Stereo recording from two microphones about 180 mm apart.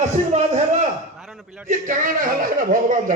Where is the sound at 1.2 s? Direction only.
Centre (ahead or behind).